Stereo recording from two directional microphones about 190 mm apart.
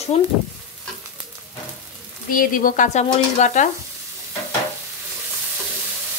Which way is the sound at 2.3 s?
45° left (ahead or behind).